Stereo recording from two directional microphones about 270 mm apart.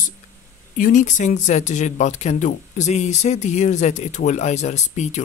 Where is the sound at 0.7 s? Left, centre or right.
Left.